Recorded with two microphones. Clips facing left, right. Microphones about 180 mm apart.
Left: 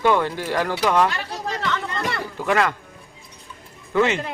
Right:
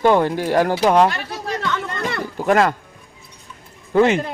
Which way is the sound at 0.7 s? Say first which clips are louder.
Right 2 dB; 30° right (ahead or behind).